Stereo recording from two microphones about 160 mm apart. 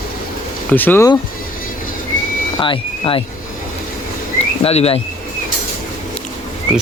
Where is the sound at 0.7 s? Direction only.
10° left (ahead or behind).